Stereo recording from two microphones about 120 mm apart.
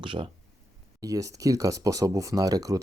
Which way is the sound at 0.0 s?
45° right (ahead or behind).